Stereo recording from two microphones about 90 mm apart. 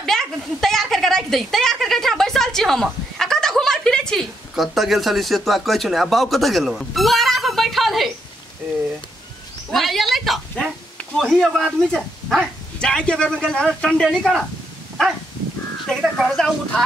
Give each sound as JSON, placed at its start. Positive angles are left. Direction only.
{"t": 0.0, "sound": "speech", "side_deg": 5}
{"t": 9.7, "sound": "a sound", "side_deg": 0}
{"t": 11.1, "sound": "speech", "side_deg": 0}
{"t": 15.9, "sound": "speech", "side_deg": 5}